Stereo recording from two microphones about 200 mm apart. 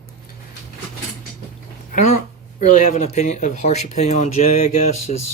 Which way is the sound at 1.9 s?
40° left (ahead or behind).